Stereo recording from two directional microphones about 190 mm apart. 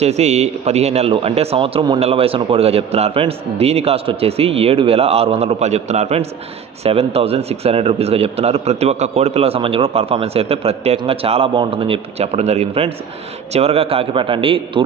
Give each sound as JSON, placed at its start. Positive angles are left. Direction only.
{"t": 0.0, "sound": "a man's voice", "side_deg": -35}